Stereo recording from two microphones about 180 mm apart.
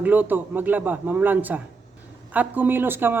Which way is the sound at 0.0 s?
10° right (ahead or behind).